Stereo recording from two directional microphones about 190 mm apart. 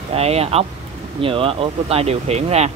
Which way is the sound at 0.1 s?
35° right (ahead or behind).